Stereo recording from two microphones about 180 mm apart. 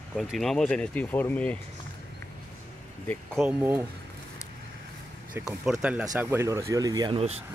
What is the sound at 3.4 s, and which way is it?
Speech, 10° right (ahead or behind).